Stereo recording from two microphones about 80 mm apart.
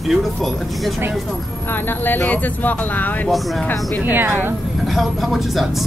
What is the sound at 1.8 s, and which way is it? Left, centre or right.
Speech, left.